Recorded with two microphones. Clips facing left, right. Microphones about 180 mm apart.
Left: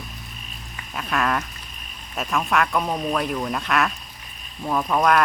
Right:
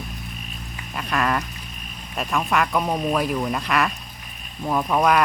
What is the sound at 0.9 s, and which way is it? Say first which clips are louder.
Duck: right 1 dB; centre (ahead or behind).